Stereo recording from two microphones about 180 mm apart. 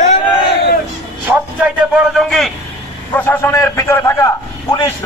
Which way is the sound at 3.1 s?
10° left (ahead or behind).